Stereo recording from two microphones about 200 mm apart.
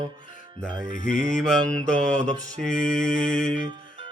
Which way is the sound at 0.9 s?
40° left (ahead or behind).